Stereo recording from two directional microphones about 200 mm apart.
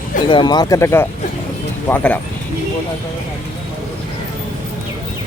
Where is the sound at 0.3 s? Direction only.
20° left (ahead or behind).